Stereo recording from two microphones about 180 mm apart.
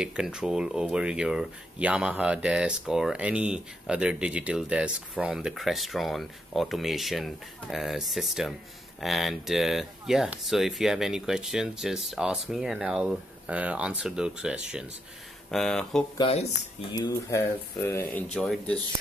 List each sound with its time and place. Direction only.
0.0 s speech: 5° right (ahead or behind)
16.2 s speech: 35° left (ahead or behind)
16.9 s speech: 20° left (ahead or behind)